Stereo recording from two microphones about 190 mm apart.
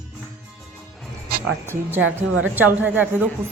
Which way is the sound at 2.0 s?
90° right.